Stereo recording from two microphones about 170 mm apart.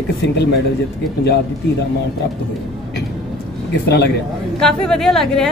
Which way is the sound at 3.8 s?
80° left.